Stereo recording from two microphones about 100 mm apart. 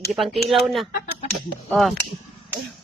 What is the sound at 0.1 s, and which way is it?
Speech, centre (ahead or behind).